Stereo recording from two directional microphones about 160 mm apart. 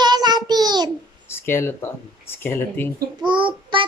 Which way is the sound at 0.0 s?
25° right (ahead or behind).